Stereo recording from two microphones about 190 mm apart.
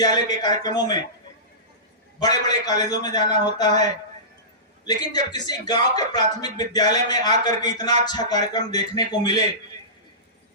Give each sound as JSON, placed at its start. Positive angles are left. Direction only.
{"t": 0.0, "sound": "speech", "side_deg": 20}
{"t": 2.2, "sound": "speech", "side_deg": 20}